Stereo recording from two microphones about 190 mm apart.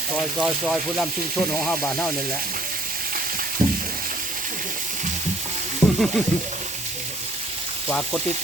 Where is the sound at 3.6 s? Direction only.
45° right (ahead or behind).